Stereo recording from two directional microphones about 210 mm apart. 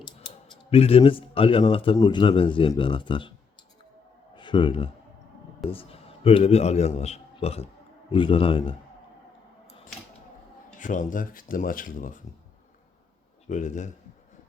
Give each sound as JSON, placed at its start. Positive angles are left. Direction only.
{"t": 0.6, "sound": "a man's voice", "side_deg": 30}
{"t": 4.4, "sound": "a man's voice", "side_deg": 20}
{"t": 10.8, "sound": "speech", "side_deg": 35}
{"t": 13.5, "sound": "speech", "side_deg": 35}